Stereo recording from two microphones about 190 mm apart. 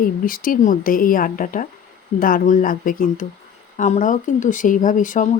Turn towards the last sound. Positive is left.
turn(degrees=45)  # may be behind; listen again after turning